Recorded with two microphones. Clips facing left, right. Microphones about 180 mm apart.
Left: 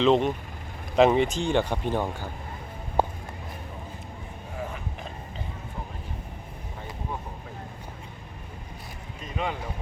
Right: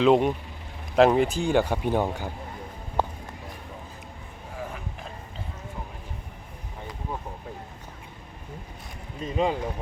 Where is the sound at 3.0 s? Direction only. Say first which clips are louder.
Left 2 dB; 10° left (ahead or behind).